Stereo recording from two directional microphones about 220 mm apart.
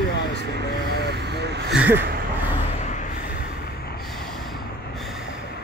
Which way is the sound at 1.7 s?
5° right (ahead or behind).